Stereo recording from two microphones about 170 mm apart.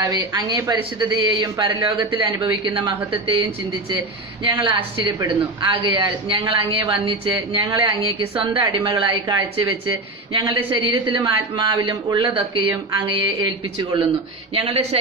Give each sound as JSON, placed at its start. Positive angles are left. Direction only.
{"t": 0.0, "sound": "speech", "side_deg": -20}
{"t": 14.5, "sound": "a woman's voice", "side_deg": -35}